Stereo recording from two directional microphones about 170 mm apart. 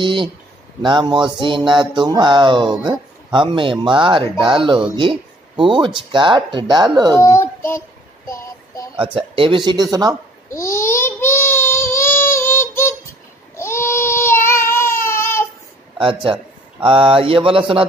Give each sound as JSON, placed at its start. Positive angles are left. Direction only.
{"t": 0.0, "sound": "speech", "side_deg": -30}
{"t": 7.2, "sound": "a sound", "side_deg": 15}
{"t": 8.9, "sound": "speech", "side_deg": -30}
{"t": 10.5, "sound": "a sound", "side_deg": 15}
{"t": 13.6, "sound": "child singing", "side_deg": 15}
{"t": 16.0, "sound": "speech", "side_deg": -30}